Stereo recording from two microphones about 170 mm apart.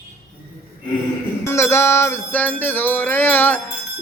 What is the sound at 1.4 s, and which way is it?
Music, 15° left (ahead or behind).